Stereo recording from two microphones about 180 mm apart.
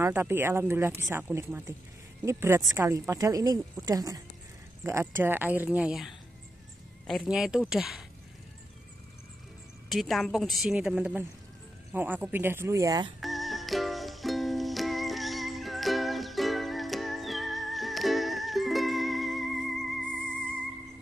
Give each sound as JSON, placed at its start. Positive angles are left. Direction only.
{"t": 0.0, "sound": "a woman's voice", "side_deg": -10}
{"t": 9.8, "sound": "a woman's voice", "side_deg": 0}
{"t": 13.2, "sound": "music", "side_deg": 0}